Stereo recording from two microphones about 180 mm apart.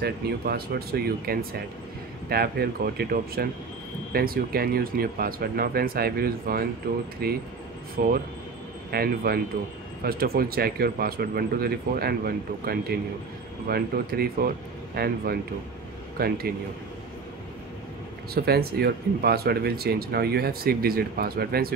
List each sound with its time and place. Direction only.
0.0 s speech: 60° right (ahead or behind)
16.2 s speech: 60° right (ahead or behind)
18.3 s speech: 60° right (ahead or behind)